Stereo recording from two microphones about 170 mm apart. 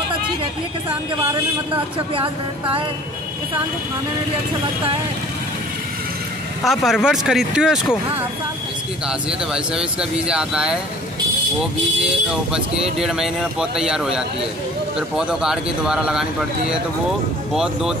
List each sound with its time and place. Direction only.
2.1 s a woman's voice: 30° right (ahead or behind)
6.6 s speech: centre (ahead or behind)
9.0 s speech: 5° right (ahead or behind)
12.0 s speech: 5° right (ahead or behind)